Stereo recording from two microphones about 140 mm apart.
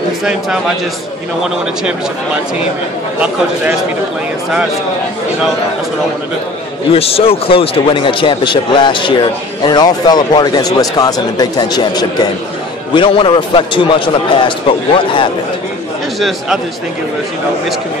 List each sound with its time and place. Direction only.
0.2 s a man's voice: 5° right (ahead or behind)
6.9 s speech: 45° left (ahead or behind)
16.2 s a man's voice: centre (ahead or behind)